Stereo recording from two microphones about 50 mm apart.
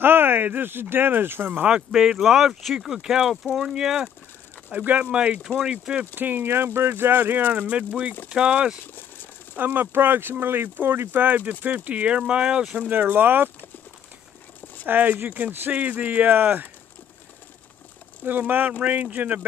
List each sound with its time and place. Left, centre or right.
0.0 s speech: right
1.7 s speech: centre
2.0 s speech: centre
4.6 s speech: right
6.1 s speech: right
7.7 s speech: right
8.9 s a sound: left
9.6 s speech: right; by 12.6 s centre
12.9 s speech: right
14.9 s speech: right
18.5 s speech: right